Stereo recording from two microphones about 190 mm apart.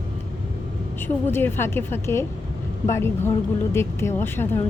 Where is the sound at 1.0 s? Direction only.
10° left (ahead or behind).